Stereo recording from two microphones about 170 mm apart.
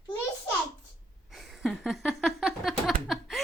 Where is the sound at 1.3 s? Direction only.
Centre (ahead or behind).